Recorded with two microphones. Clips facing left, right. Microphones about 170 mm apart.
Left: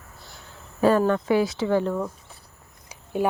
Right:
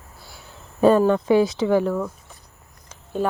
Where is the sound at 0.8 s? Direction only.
20° right (ahead or behind).